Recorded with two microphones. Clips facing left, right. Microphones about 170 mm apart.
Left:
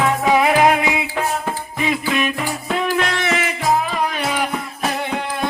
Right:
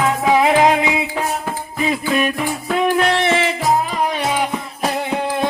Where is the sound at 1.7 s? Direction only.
40° right (ahead or behind).